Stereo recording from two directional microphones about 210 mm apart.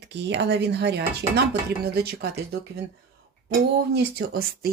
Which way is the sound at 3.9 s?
45° right (ahead or behind).